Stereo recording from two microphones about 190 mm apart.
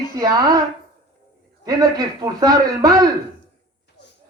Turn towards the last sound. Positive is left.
turn(degrees=-20)  # may be behind; listen again after turning